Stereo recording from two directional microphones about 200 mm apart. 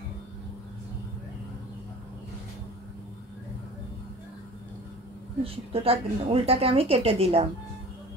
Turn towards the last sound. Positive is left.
turn(degrees=-30)  # may be behind; listen again after turning